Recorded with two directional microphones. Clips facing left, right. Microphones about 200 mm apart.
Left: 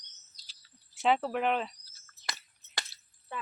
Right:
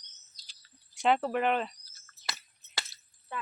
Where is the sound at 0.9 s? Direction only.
Centre (ahead or behind).